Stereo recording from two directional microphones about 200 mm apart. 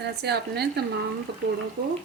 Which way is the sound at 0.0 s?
55° right (ahead or behind).